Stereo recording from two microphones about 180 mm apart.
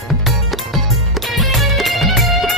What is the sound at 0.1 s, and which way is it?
Music, centre (ahead or behind).